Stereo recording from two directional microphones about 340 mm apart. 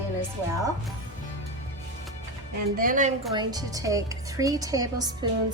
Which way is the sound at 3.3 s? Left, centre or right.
Centre.